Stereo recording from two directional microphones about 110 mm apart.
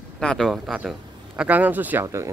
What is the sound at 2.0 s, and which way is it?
Speech, 25° right (ahead or behind).